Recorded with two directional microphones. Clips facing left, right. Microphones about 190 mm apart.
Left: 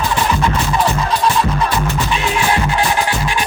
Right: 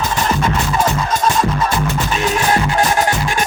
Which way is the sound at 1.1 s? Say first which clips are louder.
Even; 45° right (ahead or behind).